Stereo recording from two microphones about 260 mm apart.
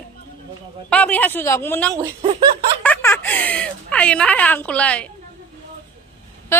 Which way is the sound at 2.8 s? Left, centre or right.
Centre.